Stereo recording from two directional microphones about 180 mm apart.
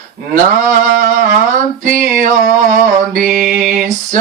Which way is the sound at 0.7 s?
45° right (ahead or behind).